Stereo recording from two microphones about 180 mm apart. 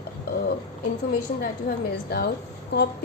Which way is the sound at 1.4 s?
55° left (ahead or behind).